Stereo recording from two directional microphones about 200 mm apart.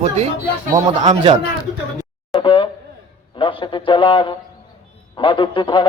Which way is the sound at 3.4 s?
25° left (ahead or behind).